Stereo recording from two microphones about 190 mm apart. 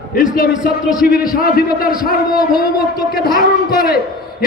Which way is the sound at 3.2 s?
50° left (ahead or behind).